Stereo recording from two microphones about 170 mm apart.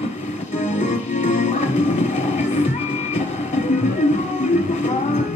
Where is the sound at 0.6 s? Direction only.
45° left (ahead or behind).